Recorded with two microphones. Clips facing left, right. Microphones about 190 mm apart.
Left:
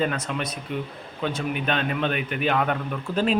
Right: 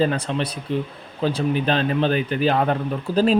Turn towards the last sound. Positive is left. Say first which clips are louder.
# right 5 dB
turn(degrees=-35)  # may be behind; listen again after turning